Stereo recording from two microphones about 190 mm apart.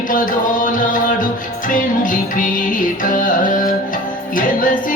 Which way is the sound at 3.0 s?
45° left (ahead or behind).